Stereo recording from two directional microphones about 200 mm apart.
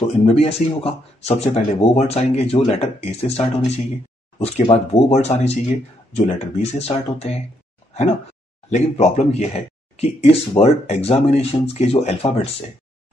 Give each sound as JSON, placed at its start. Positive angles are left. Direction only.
{"t": 0.2, "sound": "speech", "side_deg": 30}